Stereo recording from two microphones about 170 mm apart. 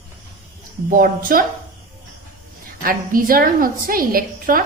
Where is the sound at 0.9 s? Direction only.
55° right (ahead or behind).